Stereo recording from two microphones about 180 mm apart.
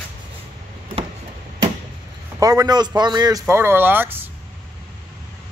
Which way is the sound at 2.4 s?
20° right (ahead or behind).